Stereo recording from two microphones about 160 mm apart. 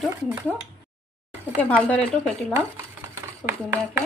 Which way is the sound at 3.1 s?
15° right (ahead or behind).